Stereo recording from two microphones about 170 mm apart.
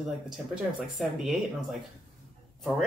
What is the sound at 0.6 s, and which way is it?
Speech, 5° right (ahead or behind).